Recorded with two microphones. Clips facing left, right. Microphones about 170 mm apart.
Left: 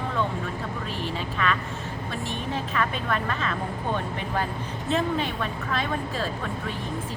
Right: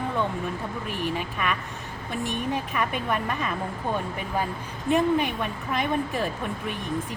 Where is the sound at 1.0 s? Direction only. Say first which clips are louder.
Right 1 dB; 15° right (ahead or behind).